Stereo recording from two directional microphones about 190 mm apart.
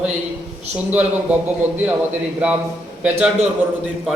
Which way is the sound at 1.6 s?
35° right (ahead or behind).